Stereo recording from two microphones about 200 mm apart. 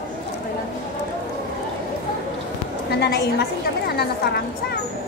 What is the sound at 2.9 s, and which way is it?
A woman's voice, 55° left (ahead or behind).